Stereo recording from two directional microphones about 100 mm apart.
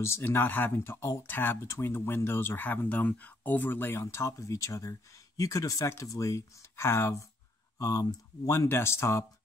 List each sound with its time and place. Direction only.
0.0 s speech: 25° left (ahead or behind)